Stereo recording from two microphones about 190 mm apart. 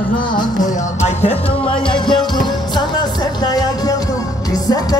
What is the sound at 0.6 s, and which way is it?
Music, 35° left (ahead or behind).